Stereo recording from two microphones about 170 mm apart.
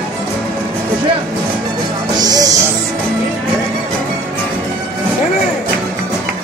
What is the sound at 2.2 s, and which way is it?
Music, 20° right (ahead or behind).